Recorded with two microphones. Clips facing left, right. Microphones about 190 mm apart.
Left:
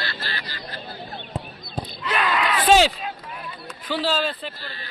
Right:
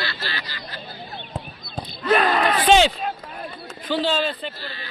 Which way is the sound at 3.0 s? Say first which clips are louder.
Right 4 dB; 45° right (ahead or behind).